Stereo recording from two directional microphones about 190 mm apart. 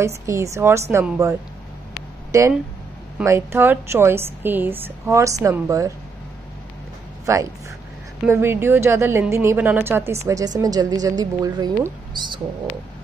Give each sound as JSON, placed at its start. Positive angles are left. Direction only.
{"t": 0.0, "sound": "a woman's voice", "side_deg": -15}
{"t": 2.3, "sound": "a woman's voice", "side_deg": -15}
{"t": 8.3, "sound": "a woman's voice", "side_deg": -10}